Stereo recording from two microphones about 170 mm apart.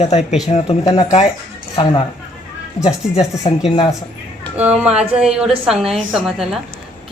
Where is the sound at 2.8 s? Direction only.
40° left (ahead or behind).